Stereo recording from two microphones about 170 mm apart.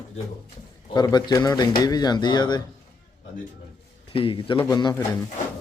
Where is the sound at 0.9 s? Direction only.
25° left (ahead or behind).